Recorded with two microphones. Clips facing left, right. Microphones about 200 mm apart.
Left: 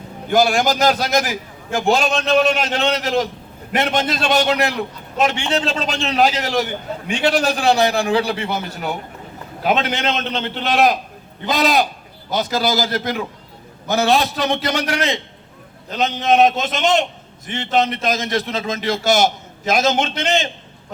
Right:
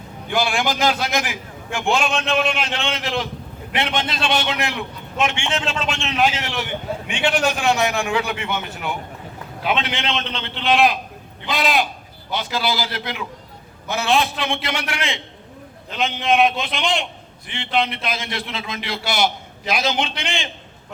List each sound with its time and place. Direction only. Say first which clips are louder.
0.3 s a man's voice: left 6 dB; 40° left (ahead or behind)